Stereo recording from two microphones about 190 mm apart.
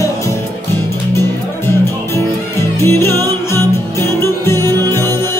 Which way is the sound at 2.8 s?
15° left (ahead or behind).